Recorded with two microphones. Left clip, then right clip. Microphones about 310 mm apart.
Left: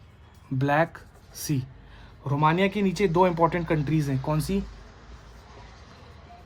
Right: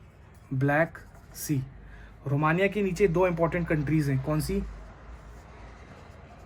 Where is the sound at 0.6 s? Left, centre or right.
Left.